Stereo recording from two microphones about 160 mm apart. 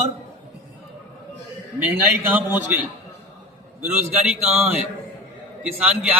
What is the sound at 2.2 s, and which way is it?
Speech, 10° right (ahead or behind).